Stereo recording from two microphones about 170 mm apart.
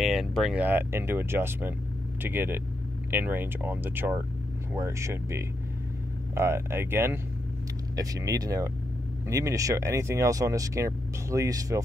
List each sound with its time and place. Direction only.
0.0 s speech: centre (ahead or behind); by 11.8 s 20° right (ahead or behind)